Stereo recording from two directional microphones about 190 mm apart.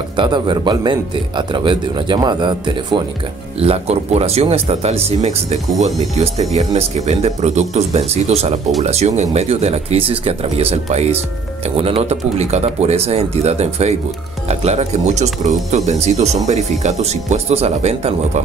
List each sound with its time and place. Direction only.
0.2 s speech: 25° right (ahead or behind)